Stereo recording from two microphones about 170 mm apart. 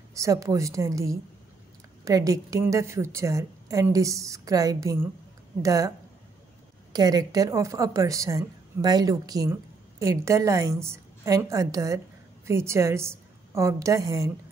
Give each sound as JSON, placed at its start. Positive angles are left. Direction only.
{"t": 0.1, "sound": "a woman's voice", "side_deg": -20}